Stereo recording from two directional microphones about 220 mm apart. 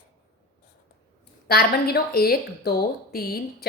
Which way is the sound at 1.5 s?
45° left (ahead or behind).